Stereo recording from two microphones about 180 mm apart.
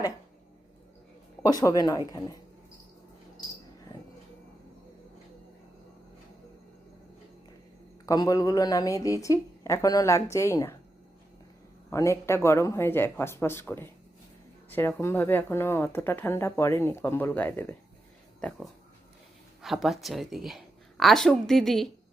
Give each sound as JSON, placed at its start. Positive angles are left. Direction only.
{"t": 1.4, "sound": "speech", "side_deg": 20}
{"t": 8.0, "sound": "a woman's voice", "side_deg": 20}
{"t": 11.9, "sound": "a woman's voice", "side_deg": 15}